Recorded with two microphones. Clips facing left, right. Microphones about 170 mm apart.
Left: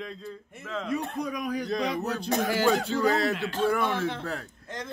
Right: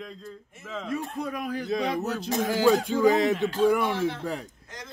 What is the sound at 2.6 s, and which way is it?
Snicker, 10° right (ahead or behind).